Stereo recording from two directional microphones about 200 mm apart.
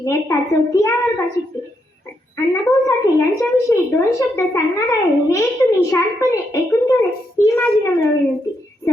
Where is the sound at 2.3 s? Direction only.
15° left (ahead or behind).